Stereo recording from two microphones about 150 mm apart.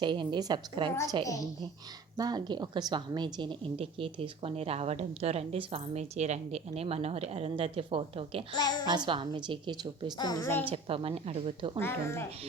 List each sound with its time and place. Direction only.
0.0 s a woman's voice: 30° right (ahead or behind)
1.2 s a woman's voice: 25° left (ahead or behind)
2.1 s a woman's voice: 25° right (ahead or behind)
10.2 s a woman's voice: 25° left (ahead or behind)
10.7 s a woman's voice: 40° right (ahead or behind)
11.8 s speech: 15° left (ahead or behind)